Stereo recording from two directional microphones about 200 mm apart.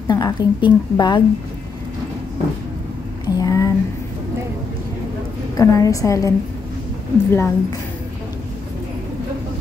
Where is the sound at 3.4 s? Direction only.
15° left (ahead or behind).